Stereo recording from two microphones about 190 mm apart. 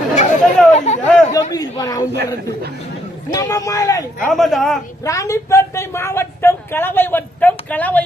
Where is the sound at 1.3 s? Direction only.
20° left (ahead or behind).